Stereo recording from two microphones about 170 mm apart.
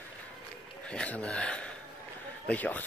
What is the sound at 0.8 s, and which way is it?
Speech, 5° left (ahead or behind).